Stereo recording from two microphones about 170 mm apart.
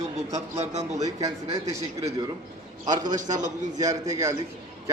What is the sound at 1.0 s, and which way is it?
A man's voice, 20° right (ahead or behind).